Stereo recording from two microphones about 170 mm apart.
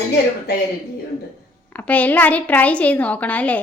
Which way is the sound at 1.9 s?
10° left (ahead or behind).